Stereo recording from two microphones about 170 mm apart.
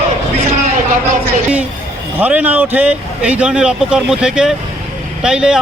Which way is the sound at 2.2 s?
10° right (ahead or behind).